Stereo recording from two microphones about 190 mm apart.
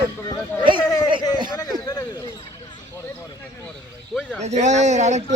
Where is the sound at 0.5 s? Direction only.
10° left (ahead or behind).